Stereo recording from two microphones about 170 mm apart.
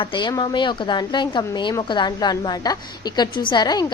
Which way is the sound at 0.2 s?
25° left (ahead or behind).